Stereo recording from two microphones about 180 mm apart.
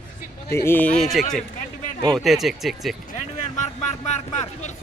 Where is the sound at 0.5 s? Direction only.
15° left (ahead or behind).